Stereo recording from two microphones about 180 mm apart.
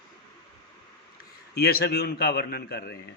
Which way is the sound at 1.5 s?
60° left (ahead or behind).